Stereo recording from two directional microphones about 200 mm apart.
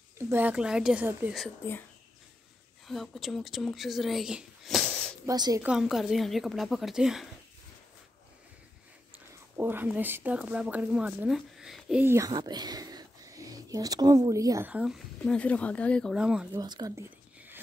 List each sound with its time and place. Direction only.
0.2 s a woman's voice: 10° right (ahead or behind)
2.9 s speech: centre (ahead or behind)
5.2 s speech: 20° right (ahead or behind)
5.6 s speech: 5° right (ahead or behind)
9.6 s a woman's voice: 10° right (ahead or behind)
16.5 s speech: 20° right (ahead or behind)